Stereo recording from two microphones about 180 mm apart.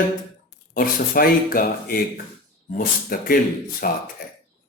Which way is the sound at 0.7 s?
55° left (ahead or behind).